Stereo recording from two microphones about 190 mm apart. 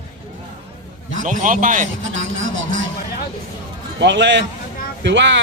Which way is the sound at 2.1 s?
90° right.